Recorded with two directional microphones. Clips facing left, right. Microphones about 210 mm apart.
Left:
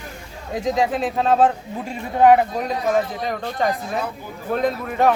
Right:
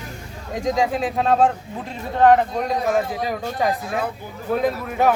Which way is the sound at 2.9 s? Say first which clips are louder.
Even; 5° right (ahead or behind).